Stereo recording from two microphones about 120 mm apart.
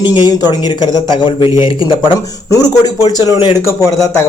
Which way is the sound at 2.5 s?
30° left (ahead or behind).